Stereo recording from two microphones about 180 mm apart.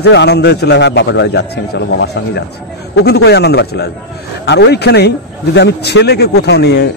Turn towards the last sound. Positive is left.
turn(degrees=65)  # may be behind; listen again after turning